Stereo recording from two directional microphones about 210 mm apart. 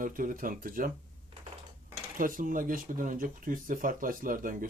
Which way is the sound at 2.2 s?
40° right (ahead or behind).